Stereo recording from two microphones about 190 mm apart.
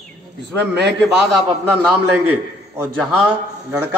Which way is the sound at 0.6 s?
65° right (ahead or behind).